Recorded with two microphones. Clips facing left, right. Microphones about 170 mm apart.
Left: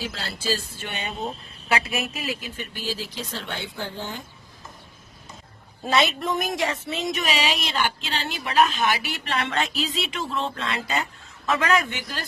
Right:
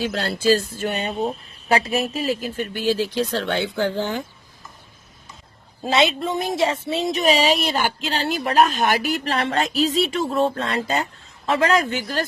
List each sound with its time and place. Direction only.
0.0 s speech: 60° right (ahead or behind)
0.4 s speech: 50° right (ahead or behind)
2.8 s speech: 70° right (ahead or behind)
5.8 s speech: 25° right (ahead or behind)